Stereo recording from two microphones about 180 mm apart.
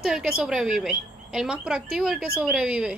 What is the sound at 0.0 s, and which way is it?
Speech, 5° right (ahead or behind).